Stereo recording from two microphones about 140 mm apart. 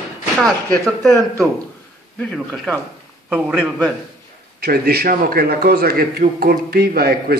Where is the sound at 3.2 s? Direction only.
10° right (ahead or behind).